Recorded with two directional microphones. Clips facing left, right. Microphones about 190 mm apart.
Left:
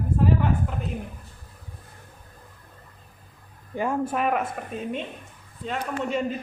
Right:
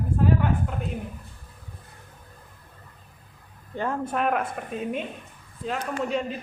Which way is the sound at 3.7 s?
10° left (ahead or behind).